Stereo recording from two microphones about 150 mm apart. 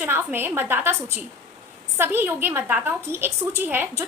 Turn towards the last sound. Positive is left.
turn(degrees=-15)  # may be behind; listen again after turning